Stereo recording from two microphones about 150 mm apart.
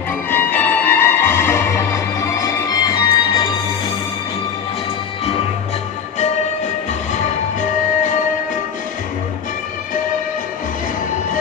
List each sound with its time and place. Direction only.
0.3 s music: 15° left (ahead or behind)